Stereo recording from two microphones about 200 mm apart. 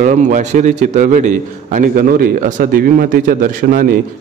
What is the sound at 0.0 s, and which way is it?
A man's voice, 40° right (ahead or behind).